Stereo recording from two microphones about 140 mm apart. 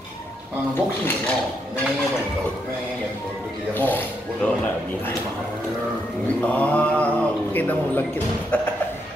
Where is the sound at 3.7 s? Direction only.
15° left (ahead or behind).